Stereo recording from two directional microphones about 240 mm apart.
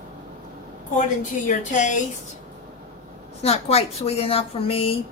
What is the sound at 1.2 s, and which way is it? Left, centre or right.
Speech, left.